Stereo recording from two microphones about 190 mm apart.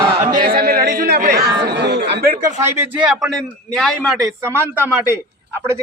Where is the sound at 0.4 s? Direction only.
55° right (ahead or behind).